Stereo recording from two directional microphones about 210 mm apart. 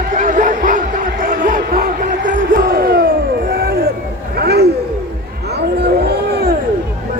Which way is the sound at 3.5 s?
45° right (ahead or behind).